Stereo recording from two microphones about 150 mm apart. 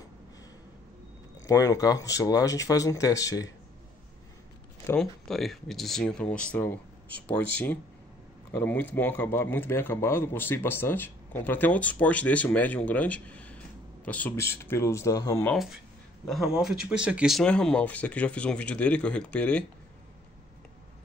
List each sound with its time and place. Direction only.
1.4 s speech: 20° left (ahead or behind)
4.9 s speech: centre (ahead or behind); by 15.5 s 20° left (ahead or behind)
15.5 s speech: centre (ahead or behind)